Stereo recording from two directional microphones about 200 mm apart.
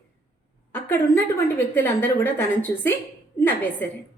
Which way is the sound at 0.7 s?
10° left (ahead or behind).